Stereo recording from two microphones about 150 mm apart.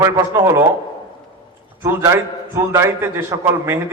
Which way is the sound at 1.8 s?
20° right (ahead or behind).